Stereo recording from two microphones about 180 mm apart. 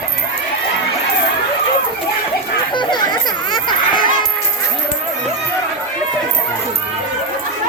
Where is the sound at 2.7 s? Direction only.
25° left (ahead or behind).